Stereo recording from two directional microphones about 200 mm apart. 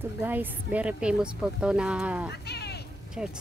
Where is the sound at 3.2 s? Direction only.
5° right (ahead or behind).